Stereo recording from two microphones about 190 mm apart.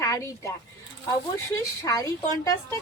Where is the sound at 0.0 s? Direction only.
15° left (ahead or behind).